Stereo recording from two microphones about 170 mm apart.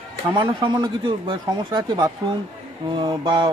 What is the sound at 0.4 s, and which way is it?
Speech, 25° right (ahead or behind).